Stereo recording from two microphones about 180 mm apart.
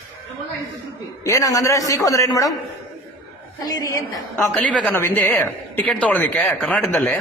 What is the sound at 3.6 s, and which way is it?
A man's voice, 20° left (ahead or behind).